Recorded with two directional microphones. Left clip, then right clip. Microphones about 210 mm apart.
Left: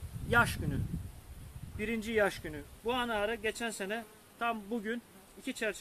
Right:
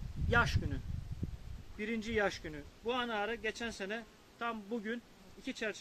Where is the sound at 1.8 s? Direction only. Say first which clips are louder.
Left 4 dB; centre (ahead or behind).